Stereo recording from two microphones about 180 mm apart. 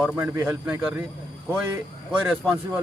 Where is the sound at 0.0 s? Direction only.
10° right (ahead or behind).